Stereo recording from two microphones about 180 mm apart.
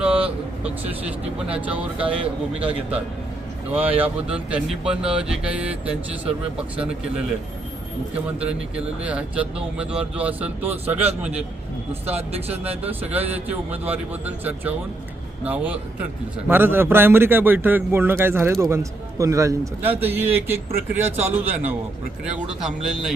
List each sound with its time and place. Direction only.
0.6 s speech: 10° right (ahead or behind)
8.4 s speech: 5° right (ahead or behind)
12.0 s speech: 35° right (ahead or behind)
13.1 s speech: 10° right (ahead or behind)